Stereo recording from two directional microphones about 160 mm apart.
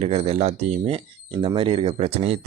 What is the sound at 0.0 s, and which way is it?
Speech, 40° right (ahead or behind).